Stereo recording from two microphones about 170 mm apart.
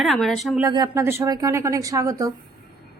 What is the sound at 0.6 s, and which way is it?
Speech, 20° right (ahead or behind).